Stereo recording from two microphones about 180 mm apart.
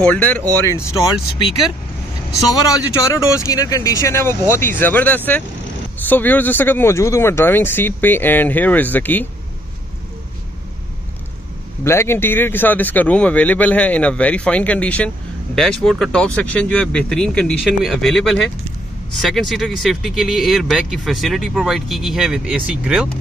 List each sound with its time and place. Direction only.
0.0 s speech: 10° left (ahead or behind)
2.5 s speech: 20° left (ahead or behind)
11.8 s speech: 15° left (ahead or behind); by 23.0 s 5° right (ahead or behind)